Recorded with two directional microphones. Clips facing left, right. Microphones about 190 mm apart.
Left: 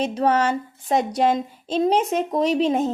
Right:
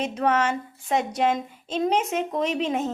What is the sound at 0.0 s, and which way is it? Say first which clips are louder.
Female singing: left 3 dB; 35° left (ahead or behind).